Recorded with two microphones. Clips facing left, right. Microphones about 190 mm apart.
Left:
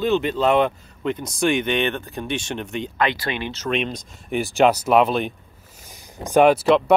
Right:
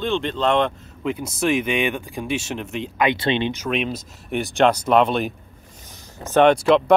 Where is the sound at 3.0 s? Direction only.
20° right (ahead or behind).